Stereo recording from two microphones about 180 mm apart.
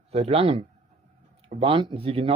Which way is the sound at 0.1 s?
35° right (ahead or behind).